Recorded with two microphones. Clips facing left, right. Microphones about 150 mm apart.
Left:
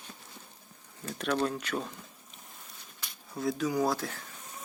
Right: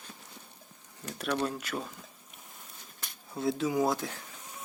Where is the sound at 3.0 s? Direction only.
50° right (ahead or behind).